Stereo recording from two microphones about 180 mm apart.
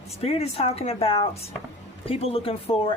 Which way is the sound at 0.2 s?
35° left (ahead or behind).